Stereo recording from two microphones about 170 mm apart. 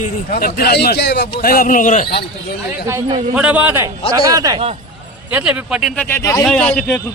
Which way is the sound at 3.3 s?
10° right (ahead or behind).